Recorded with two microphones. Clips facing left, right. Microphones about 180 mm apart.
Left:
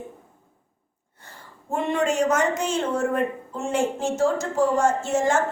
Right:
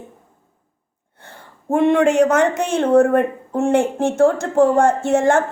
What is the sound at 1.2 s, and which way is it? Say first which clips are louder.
Speech: right 4 dB; 60° right (ahead or behind).